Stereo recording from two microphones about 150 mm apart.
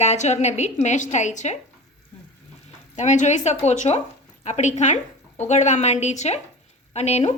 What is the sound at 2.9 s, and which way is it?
A woman's voice, 50° left (ahead or behind).